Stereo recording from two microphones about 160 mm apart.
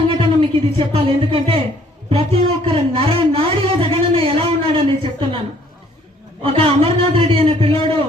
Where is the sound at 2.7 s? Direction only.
35° right (ahead or behind).